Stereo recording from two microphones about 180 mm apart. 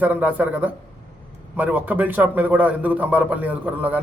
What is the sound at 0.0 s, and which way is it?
A man's voice, 10° right (ahead or behind).